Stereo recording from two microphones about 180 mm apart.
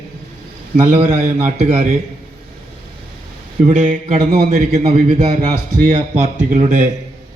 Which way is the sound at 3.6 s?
45° right (ahead or behind).